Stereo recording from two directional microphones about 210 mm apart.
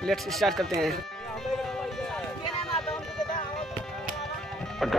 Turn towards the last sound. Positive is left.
turn(degrees=0)  # may be behind; listen again after turning